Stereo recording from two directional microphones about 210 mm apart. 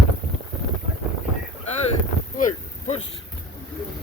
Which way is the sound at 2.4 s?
35° left (ahead or behind).